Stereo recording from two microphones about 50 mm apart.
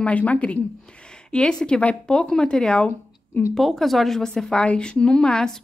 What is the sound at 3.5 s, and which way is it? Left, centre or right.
A woman's voice, centre.